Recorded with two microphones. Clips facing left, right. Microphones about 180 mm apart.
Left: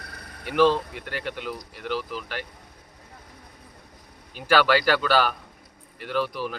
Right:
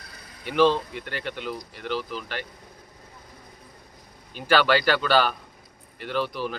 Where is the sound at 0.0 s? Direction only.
65° left (ahead or behind).